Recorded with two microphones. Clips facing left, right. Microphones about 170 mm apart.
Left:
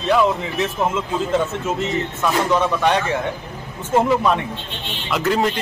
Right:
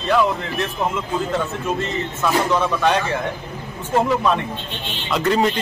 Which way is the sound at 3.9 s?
10° left (ahead or behind).